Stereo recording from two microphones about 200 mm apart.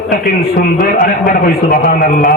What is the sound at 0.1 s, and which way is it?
A man's voice, 45° left (ahead or behind).